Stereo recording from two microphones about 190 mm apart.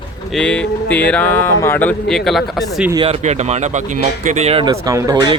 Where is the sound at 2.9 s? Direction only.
30° right (ahead or behind).